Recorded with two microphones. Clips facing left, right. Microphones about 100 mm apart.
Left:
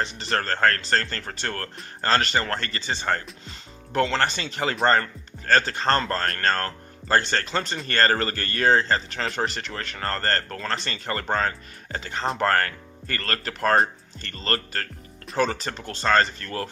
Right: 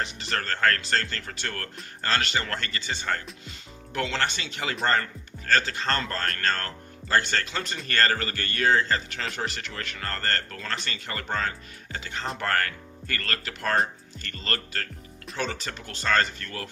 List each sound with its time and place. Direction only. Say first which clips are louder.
0.0 s speech: left 4 dB; 35° left (ahead or behind)